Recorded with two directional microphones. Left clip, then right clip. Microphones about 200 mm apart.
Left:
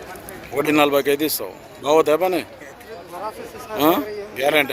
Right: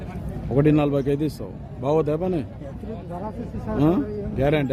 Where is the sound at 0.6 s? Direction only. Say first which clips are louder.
Left 4 dB; 10° left (ahead or behind).